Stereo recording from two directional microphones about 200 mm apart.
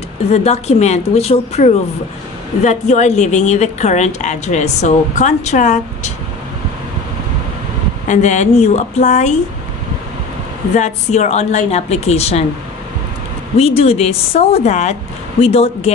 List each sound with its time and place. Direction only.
0.3 s a woman's voice: 35° left (ahead or behind)
8.1 s a woman's voice: 35° left (ahead or behind)
10.8 s a woman's voice: 35° left (ahead or behind)
13.6 s a woman's voice: 30° left (ahead or behind)